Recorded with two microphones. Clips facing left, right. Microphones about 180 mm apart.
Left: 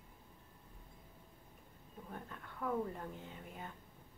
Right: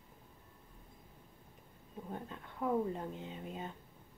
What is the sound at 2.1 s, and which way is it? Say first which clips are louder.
Speech: right 4 dB; 20° right (ahead or behind).